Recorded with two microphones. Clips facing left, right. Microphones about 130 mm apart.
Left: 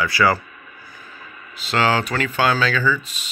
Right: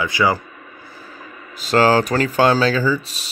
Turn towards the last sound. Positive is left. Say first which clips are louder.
# right 2 dB
turn(degrees=-35)  # may be behind; listen again after turning